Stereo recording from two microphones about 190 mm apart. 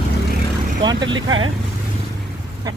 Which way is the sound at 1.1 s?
90° right.